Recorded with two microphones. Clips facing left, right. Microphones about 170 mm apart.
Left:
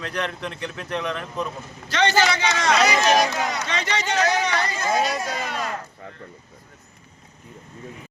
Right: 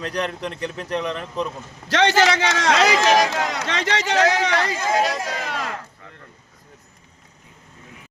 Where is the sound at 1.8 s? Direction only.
90° right.